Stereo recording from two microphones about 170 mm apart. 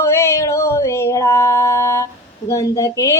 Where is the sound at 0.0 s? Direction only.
15° left (ahead or behind).